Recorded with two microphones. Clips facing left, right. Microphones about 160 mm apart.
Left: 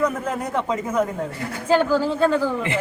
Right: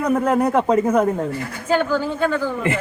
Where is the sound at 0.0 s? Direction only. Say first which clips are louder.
Right 6 dB; 60° right (ahead or behind).